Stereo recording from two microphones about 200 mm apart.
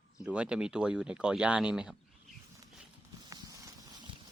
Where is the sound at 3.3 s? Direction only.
15° right (ahead or behind).